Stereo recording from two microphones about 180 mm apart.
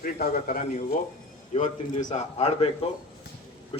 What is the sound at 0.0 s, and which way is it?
A man's voice, 55° left (ahead or behind).